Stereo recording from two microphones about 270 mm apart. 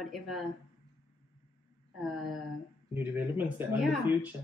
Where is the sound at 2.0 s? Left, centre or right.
Centre.